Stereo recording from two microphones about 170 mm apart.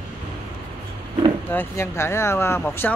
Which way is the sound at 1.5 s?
15° left (ahead or behind).